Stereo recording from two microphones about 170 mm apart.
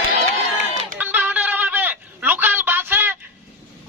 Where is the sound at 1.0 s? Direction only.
10° right (ahead or behind).